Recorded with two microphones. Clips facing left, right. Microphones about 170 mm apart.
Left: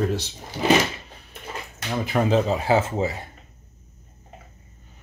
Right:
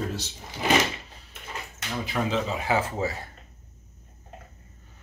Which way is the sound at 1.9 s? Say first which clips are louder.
Left 6 dB; 50° left (ahead or behind).